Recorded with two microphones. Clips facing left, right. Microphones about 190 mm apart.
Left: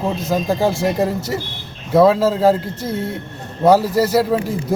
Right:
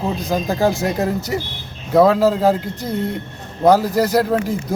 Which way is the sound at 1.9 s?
Centre (ahead or behind).